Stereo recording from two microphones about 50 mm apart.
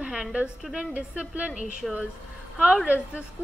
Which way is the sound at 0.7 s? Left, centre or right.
Right.